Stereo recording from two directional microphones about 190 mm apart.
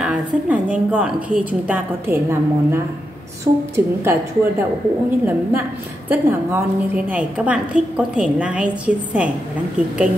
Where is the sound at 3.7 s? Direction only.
10° right (ahead or behind).